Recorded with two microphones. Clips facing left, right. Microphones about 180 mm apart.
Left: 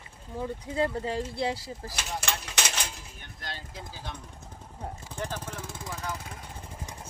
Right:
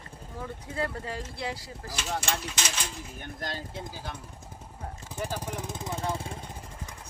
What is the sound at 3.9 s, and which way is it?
Speech, 10° right (ahead or behind).